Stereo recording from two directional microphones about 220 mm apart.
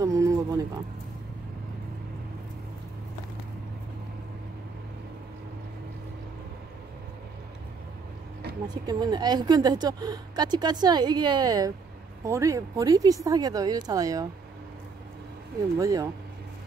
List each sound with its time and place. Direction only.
0.0 s speech: 15° right (ahead or behind)
8.6 s a woman's voice: 20° right (ahead or behind)
15.8 s speech: 15° right (ahead or behind)